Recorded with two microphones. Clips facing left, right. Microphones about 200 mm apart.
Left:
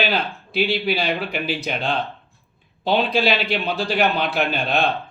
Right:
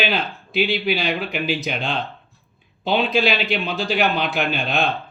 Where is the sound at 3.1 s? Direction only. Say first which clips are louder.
Even; centre (ahead or behind).